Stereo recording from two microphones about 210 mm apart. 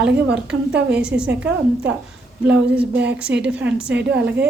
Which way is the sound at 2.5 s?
5° right (ahead or behind).